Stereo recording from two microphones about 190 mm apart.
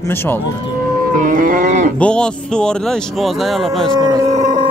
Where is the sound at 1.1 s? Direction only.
45° right (ahead or behind).